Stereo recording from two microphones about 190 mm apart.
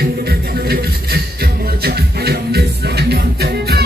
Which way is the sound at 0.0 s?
55° right (ahead or behind).